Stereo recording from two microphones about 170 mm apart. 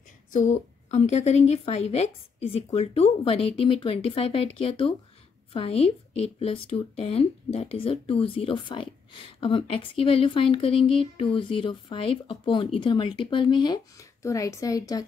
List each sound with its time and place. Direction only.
0.3 s a woman's voice: 45° left (ahead or behind)
5.5 s a woman's voice: 35° left (ahead or behind)